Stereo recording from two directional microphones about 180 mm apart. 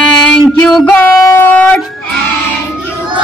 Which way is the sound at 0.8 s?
15° left (ahead or behind).